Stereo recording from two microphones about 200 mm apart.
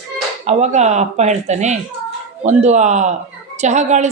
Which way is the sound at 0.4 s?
35° right (ahead or behind).